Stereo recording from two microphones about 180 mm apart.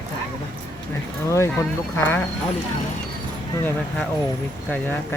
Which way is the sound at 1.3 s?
15° left (ahead or behind).